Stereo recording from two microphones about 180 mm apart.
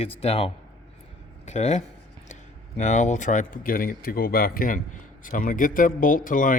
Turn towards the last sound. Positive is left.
turn(degrees=50)  # may be behind; listen again after turning